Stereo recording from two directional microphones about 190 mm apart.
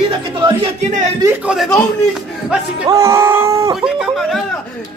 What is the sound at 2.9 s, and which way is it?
Speech, 15° right (ahead or behind).